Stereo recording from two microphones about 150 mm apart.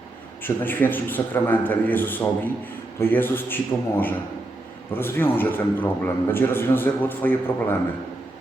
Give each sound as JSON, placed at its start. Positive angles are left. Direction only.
{"t": 0.4, "sound": "a man's voice", "side_deg": 15}